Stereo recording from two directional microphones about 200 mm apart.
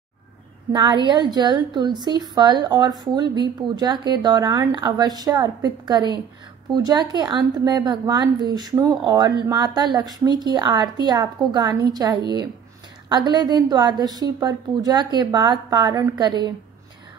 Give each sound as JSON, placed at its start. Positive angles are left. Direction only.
{"t": 0.7, "sound": "a woman's voice", "side_deg": -25}